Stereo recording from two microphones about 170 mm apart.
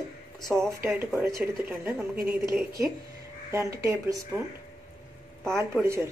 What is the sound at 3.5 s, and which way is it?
Speech, 20° right (ahead or behind).